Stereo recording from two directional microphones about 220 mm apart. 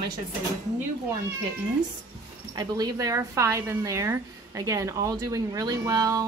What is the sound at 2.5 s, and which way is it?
A woman's voice, 15° right (ahead or behind).